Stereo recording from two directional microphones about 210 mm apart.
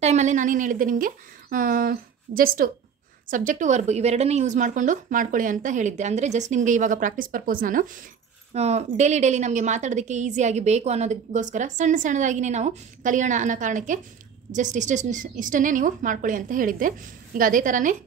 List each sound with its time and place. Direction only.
0.0 s a woman's voice: 35° right (ahead or behind)